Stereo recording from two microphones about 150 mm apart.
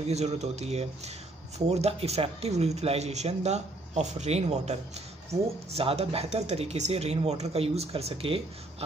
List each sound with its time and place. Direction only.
0.0 s speech: 45° right (ahead or behind)
5.8 s speech: 40° right (ahead or behind)